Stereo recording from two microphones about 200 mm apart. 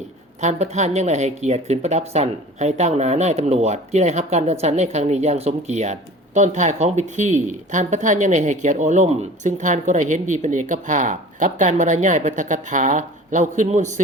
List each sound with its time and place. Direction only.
0.4 s speech: 35° right (ahead or behind)